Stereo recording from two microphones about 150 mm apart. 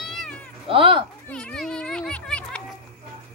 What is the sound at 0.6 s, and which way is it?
Speech, 35° right (ahead or behind).